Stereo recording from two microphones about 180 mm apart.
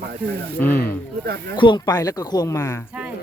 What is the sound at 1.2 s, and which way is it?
Speech, 60° right (ahead or behind).